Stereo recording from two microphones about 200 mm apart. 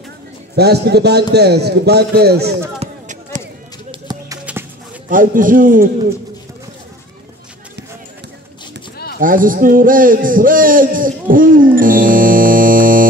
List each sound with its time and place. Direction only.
0.6 s speech: 55° right (ahead or behind)
4.1 s music: 20° right (ahead or behind)
4.5 s a sound: 5° right (ahead or behind)
5.1 s a man's voice: 40° right (ahead or behind)
8.9 s a sound: 50° left (ahead or behind)
9.2 s a man's voice: 45° right (ahead or behind)